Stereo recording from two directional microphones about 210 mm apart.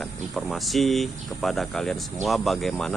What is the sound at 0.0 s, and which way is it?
Speech, centre (ahead or behind).